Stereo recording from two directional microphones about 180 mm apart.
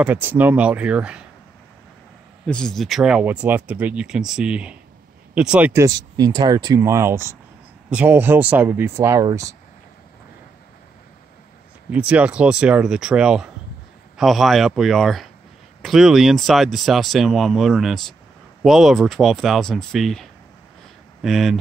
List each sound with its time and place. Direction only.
0.0 s speech: 10° right (ahead or behind)
2.4 s speech: 5° left (ahead or behind); by 9.6 s 20° right (ahead or behind)
11.9 s speech: 5° right (ahead or behind)